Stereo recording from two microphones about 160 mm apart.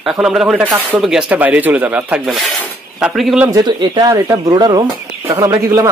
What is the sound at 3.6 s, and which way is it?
Speech, 25° right (ahead or behind).